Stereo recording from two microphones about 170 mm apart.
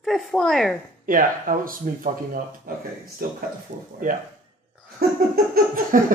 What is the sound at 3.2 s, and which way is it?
Speech, 60° right (ahead or behind).